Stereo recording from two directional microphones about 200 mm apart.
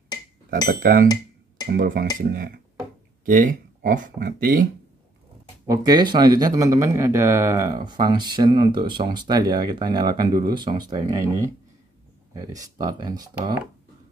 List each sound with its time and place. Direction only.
0.7 s speech: 45° right (ahead or behind)
1.0 s a sound: 20° left (ahead or behind)
1.7 s speech: 50° right (ahead or behind)
5.7 s speech: 20° right (ahead or behind)